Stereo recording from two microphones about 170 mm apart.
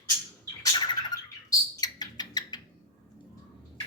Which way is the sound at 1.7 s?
25° left (ahead or behind).